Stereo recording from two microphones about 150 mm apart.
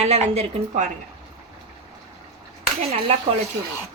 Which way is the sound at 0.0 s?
45° right (ahead or behind).